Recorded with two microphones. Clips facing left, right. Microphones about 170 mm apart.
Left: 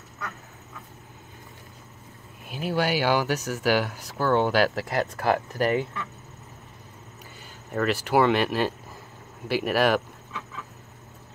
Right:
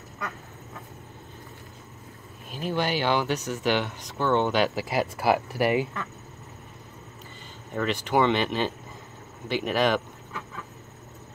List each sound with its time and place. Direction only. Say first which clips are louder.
2.5 s speech: left 2 dB; 10° left (ahead or behind); by 5.9 s 10° right (ahead or behind)
7.7 s speech: left 2 dB; 5° left (ahead or behind)